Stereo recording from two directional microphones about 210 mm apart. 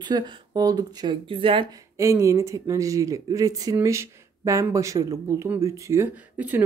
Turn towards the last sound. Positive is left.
turn(degrees=-10)  # may be behind; listen again after turning